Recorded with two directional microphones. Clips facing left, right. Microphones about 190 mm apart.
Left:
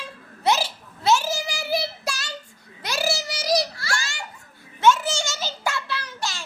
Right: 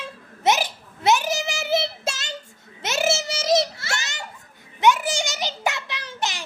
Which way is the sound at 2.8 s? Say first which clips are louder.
Right 3 dB; 25° right (ahead or behind).